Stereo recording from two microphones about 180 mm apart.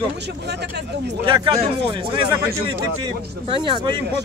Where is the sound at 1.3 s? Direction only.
30° right (ahead or behind).